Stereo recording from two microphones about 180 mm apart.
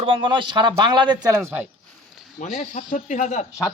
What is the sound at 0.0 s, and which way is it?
Speech, 25° right (ahead or behind).